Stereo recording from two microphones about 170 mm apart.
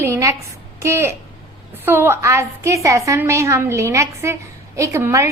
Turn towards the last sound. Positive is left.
turn(degrees=-15)  # may be behind; listen again after turning